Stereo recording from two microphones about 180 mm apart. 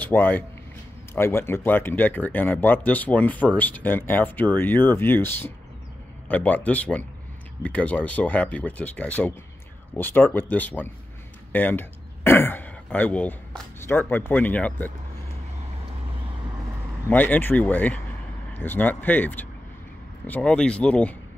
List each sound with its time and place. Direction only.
0.0 s a man's voice: 10° left (ahead or behind)
17.1 s speech: 10° left (ahead or behind)